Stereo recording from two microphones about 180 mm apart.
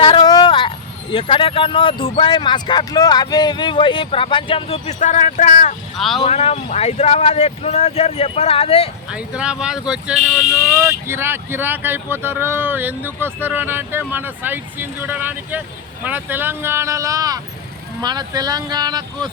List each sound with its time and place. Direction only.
0.0 s vehicle: 30° left (ahead or behind)
1.1 s speech: 30° left (ahead or behind)
6.0 s speech: centre (ahead or behind)
6.2 s speech: 35° left (ahead or behind)
9.0 s speech: 5° right (ahead or behind); by 19.3 s 20° right (ahead or behind)